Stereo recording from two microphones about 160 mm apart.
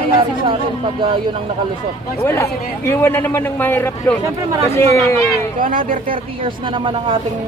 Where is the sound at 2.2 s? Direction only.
15° left (ahead or behind).